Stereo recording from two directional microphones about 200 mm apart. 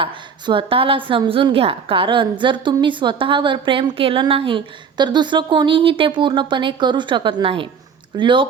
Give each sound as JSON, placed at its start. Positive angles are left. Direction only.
{"t": 0.0, "sound": "a woman's voice", "side_deg": -25}